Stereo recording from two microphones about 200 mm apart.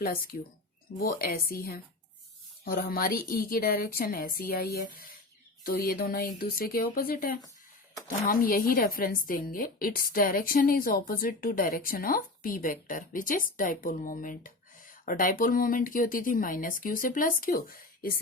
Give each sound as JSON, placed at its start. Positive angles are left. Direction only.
{"t": 0.0, "sound": "speech", "side_deg": 45}